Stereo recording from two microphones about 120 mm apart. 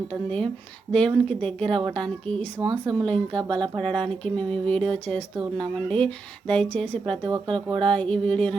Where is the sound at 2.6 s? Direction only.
35° right (ahead or behind).